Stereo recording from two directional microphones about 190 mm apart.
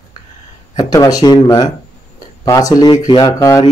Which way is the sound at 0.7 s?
20° left (ahead or behind).